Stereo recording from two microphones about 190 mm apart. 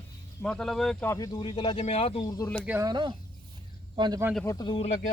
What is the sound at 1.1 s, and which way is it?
Speech, 20° left (ahead or behind).